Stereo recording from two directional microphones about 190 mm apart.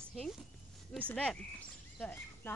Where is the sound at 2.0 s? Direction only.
10° left (ahead or behind).